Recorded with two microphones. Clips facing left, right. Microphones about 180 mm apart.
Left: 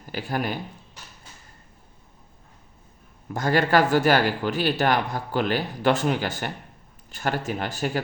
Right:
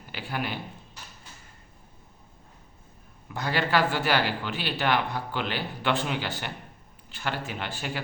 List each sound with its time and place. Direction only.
0.0 s speech: 45° left (ahead or behind)
3.2 s speech: 45° left (ahead or behind)